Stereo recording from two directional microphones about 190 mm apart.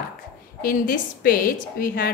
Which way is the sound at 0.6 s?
45° left (ahead or behind).